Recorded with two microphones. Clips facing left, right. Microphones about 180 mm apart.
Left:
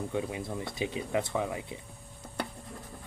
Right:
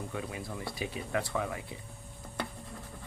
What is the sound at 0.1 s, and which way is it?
Speech, 20° left (ahead or behind).